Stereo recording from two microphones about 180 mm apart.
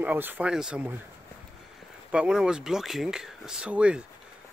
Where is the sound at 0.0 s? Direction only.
10° right (ahead or behind).